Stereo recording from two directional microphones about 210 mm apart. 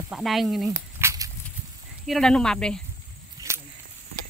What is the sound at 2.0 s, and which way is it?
Speech, centre (ahead or behind).